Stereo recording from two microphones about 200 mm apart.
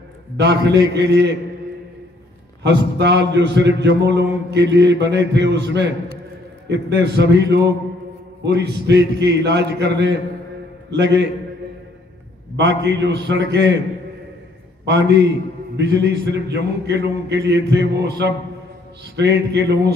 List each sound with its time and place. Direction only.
0.4 s a man's voice: 60° right (ahead or behind)
2.6 s a man's voice: 60° right (ahead or behind)
12.5 s a man's voice: 60° right (ahead or behind)
14.9 s a man's voice: 60° right (ahead or behind)